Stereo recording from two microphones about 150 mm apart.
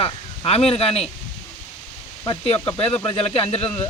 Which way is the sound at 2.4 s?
40° left (ahead or behind).